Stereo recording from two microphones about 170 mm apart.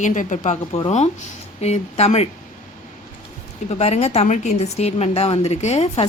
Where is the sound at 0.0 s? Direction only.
45° left (ahead or behind).